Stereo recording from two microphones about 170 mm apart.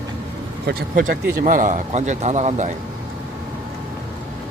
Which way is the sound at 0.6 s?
60° right (ahead or behind).